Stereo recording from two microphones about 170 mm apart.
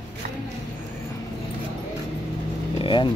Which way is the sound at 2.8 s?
30° left (ahead or behind).